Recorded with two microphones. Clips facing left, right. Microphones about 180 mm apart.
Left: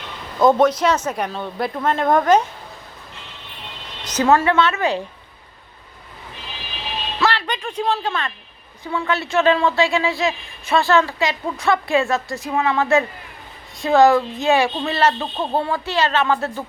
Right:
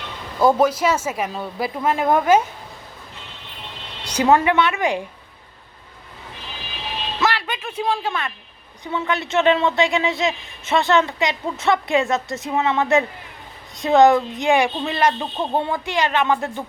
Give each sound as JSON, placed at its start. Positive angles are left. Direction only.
{"t": 0.3, "sound": "speech", "side_deg": -10}
{"t": 4.0, "sound": "speech", "side_deg": -15}
{"t": 7.2, "sound": "a woman's voice", "side_deg": -10}